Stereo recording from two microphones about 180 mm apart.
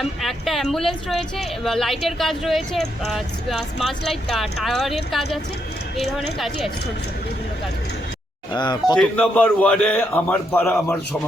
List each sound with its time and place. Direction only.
0.0 s speech: centre (ahead or behind)
8.5 s speech: 25° left (ahead or behind)
9.0 s a man's voice: 10° left (ahead or behind)